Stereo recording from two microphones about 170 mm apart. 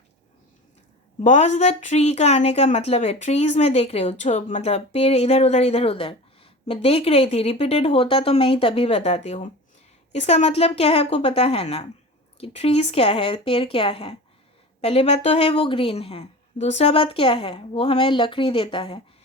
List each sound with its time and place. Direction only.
1.2 s a woman's voice: 45° left (ahead or behind)